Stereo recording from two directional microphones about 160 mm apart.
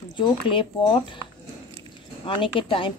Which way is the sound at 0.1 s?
30° left (ahead or behind).